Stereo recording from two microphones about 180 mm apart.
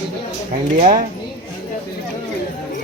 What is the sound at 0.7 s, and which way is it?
Speech, 45° right (ahead or behind).